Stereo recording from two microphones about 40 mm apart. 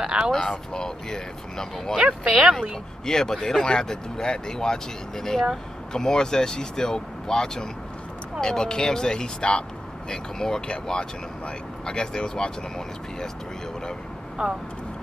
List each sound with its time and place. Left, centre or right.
0.0 s speech: centre
0.3 s speech: centre
2.0 s speech: right
3.1 s speech: centre